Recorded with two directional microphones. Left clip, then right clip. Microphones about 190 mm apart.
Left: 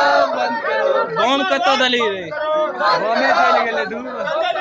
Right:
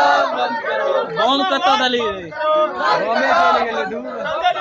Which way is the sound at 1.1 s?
50° left (ahead or behind).